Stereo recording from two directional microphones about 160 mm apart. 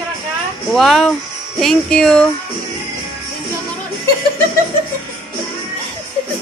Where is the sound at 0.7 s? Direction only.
Centre (ahead or behind).